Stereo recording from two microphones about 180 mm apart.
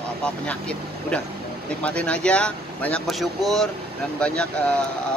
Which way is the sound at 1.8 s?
5° left (ahead or behind).